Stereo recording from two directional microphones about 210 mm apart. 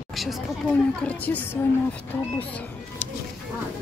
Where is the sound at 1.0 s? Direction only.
5° left (ahead or behind).